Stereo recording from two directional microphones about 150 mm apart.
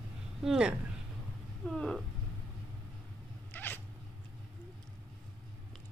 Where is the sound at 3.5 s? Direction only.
15° left (ahead or behind).